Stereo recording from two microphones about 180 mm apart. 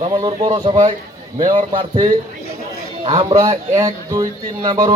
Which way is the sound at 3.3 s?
20° right (ahead or behind).